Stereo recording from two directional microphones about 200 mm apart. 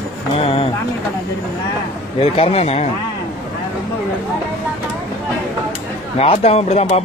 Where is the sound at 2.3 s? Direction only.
30° left (ahead or behind).